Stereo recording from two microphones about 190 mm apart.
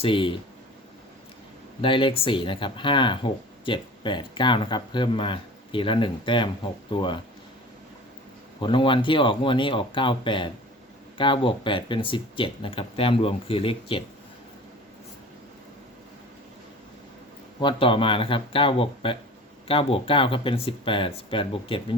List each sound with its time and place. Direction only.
0.0 s speech: 25° left (ahead or behind)
1.8 s speech: 25° left (ahead or behind)
8.6 s speech: 25° left (ahead or behind)
17.6 s speech: 25° left (ahead or behind)